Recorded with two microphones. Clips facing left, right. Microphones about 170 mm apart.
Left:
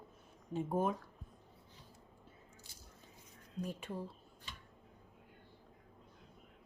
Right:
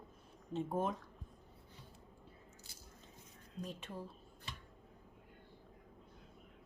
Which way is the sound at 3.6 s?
10° left (ahead or behind).